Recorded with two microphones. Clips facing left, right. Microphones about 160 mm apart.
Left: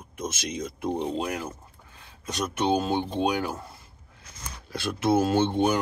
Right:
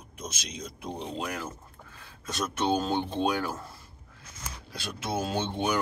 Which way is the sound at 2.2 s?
15° left (ahead or behind).